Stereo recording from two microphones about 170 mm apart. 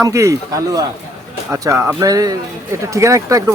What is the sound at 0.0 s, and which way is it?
A man's voice, 20° right (ahead or behind).